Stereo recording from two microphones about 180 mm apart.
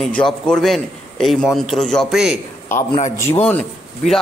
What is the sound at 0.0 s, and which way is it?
A man's voice, 5° left (ahead or behind).